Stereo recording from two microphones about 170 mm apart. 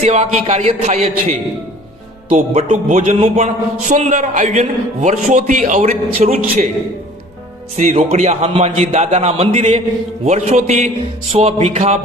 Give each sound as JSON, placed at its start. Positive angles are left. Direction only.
{"t": 0.0, "sound": "a man's voice", "side_deg": -40}
{"t": 2.6, "sound": "a man's voice", "side_deg": -50}
{"t": 3.2, "sound": "a man's voice", "side_deg": -40}
{"t": 7.8, "sound": "a man's voice", "side_deg": -40}